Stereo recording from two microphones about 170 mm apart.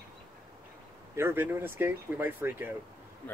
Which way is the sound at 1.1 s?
15° right (ahead or behind).